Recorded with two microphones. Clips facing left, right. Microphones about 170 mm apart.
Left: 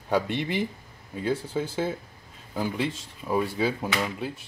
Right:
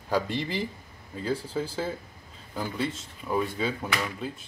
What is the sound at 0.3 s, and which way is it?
Speech, 65° left (ahead or behind).